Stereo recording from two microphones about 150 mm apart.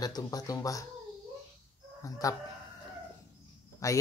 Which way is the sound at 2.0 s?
20° left (ahead or behind).